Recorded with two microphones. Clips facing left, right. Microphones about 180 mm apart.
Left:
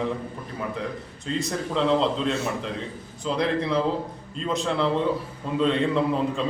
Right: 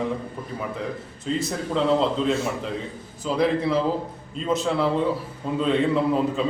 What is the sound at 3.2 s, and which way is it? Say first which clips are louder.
A man's voice: right 3 dB; 5° right (ahead or behind).